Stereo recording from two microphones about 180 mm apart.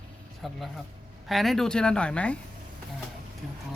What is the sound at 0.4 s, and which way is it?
Speech, centre (ahead or behind).